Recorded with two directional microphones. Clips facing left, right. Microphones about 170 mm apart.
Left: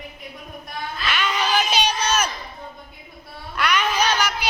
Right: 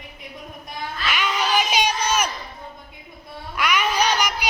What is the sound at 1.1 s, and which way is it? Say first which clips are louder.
Crowd: even; 10° right (ahead or behind).